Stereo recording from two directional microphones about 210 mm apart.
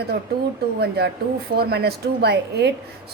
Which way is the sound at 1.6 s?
50° right (ahead or behind).